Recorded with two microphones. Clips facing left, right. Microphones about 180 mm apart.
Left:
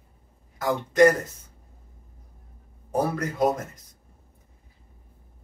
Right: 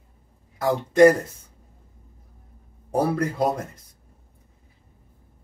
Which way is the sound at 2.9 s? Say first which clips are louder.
Right 3 dB; 30° right (ahead or behind).